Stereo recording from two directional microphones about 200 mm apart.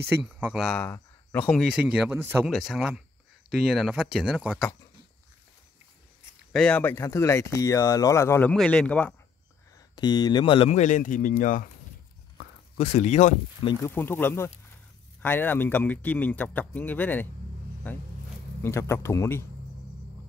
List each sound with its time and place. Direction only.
0.2 s speech: 5° right (ahead or behind)
1.6 s speech: 5° right (ahead or behind)
6.5 s speech: 5° left (ahead or behind)
9.9 s speech: 20° left (ahead or behind); by 11.7 s 40° left (ahead or behind)
12.7 s speech: 30° left (ahead or behind)
13.7 s speech: 15° left (ahead or behind)